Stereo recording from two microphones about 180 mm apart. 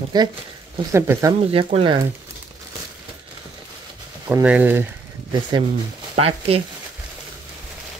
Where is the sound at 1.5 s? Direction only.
30° right (ahead or behind).